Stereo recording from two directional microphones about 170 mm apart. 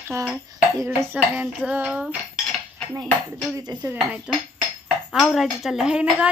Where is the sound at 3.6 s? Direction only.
25° right (ahead or behind).